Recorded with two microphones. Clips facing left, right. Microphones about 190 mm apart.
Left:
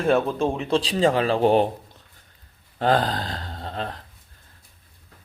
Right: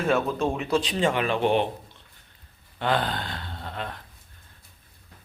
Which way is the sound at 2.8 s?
40° left (ahead or behind).